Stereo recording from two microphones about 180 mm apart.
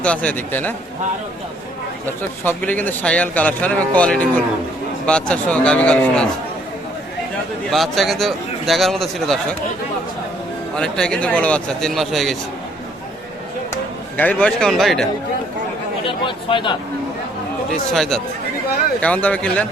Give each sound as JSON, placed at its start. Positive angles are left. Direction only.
{"t": 0.0, "sound": "a man's voice", "side_deg": 5}
{"t": 2.0, "sound": "a man's voice", "side_deg": 10}
{"t": 5.3, "sound": "a man's voice", "side_deg": 5}
{"t": 7.7, "sound": "a man's voice", "side_deg": 0}
{"t": 10.8, "sound": "a man's voice", "side_deg": 5}
{"t": 14.2, "sound": "a man's voice", "side_deg": 10}
{"t": 16.0, "sound": "speech", "side_deg": 30}
{"t": 17.9, "sound": "a man's voice", "side_deg": 0}